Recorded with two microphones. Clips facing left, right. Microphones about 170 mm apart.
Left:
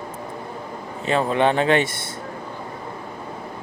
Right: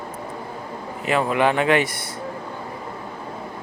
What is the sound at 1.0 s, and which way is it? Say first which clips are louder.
Speech: even; 30° left (ahead or behind).